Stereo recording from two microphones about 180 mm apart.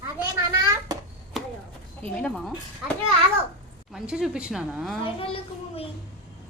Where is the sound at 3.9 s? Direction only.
5° right (ahead or behind).